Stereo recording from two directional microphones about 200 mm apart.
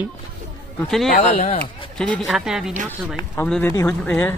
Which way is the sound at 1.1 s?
40° left (ahead or behind).